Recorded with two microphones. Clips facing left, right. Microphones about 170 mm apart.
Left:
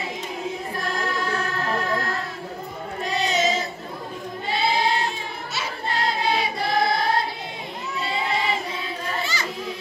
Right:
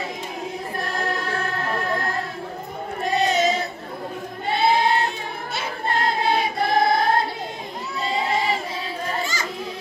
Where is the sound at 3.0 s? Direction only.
55° right (ahead or behind).